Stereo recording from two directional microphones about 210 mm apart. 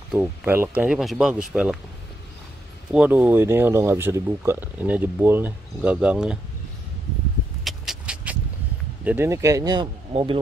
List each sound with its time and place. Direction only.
0.1 s speech: 5° right (ahead or behind)
2.9 s speech: 5° right (ahead or behind)
7.6 s vehicle: centre (ahead or behind)
9.0 s speech: 10° right (ahead or behind); by 10.4 s 25° right (ahead or behind)